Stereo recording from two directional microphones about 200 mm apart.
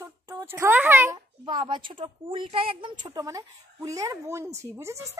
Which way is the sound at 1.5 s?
25° right (ahead or behind).